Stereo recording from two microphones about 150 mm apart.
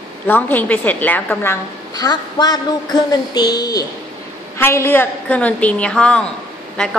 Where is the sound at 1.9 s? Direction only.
25° left (ahead or behind).